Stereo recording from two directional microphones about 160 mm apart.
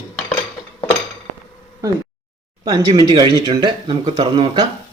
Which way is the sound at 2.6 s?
25° right (ahead or behind).